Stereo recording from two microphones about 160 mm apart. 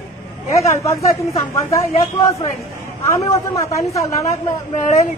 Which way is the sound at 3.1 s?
20° left (ahead or behind).